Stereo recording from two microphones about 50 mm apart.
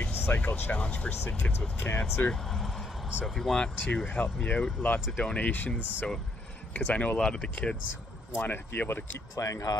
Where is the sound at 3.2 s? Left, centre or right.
Centre.